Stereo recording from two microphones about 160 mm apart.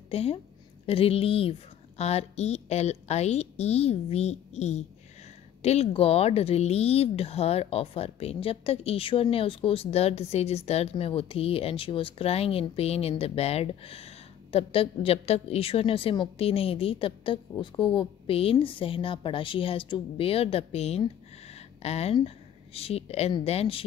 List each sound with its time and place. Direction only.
0.1 s a woman's voice: 40° left (ahead or behind)